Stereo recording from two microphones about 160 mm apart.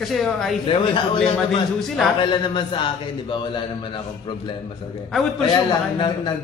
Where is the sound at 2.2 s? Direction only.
30° left (ahead or behind).